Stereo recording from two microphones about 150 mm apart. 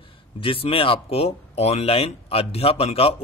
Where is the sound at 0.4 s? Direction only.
35° left (ahead or behind).